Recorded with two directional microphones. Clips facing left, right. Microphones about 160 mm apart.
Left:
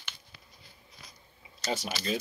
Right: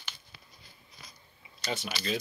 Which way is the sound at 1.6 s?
40° left (ahead or behind).